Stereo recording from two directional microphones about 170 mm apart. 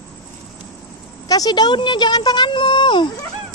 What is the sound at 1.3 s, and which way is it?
Speech, 25° left (ahead or behind).